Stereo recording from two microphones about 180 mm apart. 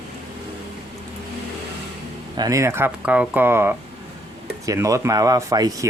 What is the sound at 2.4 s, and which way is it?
Speech, 20° right (ahead or behind).